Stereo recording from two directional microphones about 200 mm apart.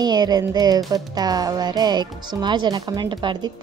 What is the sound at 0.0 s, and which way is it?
Music, 20° right (ahead or behind).